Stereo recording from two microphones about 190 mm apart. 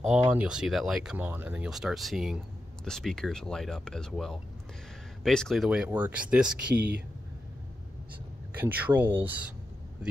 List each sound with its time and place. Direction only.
0.0 s speech: 5° right (ahead or behind)
8.5 s speech: 10° right (ahead or behind)